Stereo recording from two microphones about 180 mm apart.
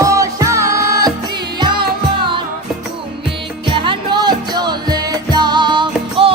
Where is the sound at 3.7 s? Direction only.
30° right (ahead or behind).